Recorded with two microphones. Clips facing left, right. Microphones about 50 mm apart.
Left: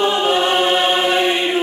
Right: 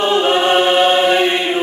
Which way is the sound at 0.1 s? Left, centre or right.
Right.